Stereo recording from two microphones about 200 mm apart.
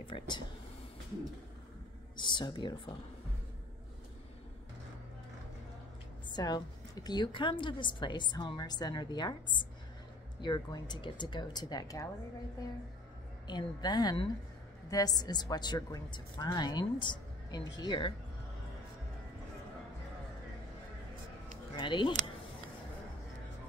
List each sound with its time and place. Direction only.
0.0 s speech: 25° left (ahead or behind)
2.1 s a woman's voice: 25° left (ahead or behind)
6.3 s a woman's voice: 20° left (ahead or behind)
13.5 s a woman's voice: 20° left (ahead or behind)
21.7 s speech: 25° left (ahead or behind)